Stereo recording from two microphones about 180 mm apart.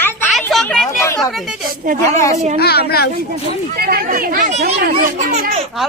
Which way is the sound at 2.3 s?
40° right (ahead or behind).